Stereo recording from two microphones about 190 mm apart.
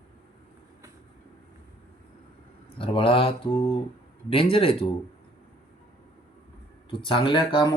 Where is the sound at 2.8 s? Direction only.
30° left (ahead or behind).